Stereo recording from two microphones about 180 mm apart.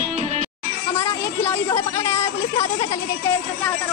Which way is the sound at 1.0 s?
15° left (ahead or behind).